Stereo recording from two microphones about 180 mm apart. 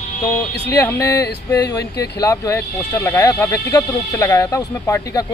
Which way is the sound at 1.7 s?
20° left (ahead or behind).